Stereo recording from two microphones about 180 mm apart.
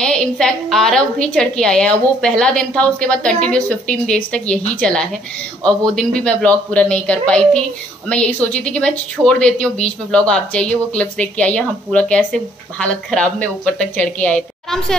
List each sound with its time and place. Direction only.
0.0 s a woman's voice: 5° left (ahead or behind)